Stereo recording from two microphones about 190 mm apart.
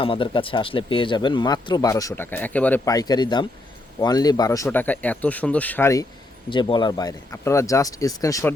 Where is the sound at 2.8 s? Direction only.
20° left (ahead or behind).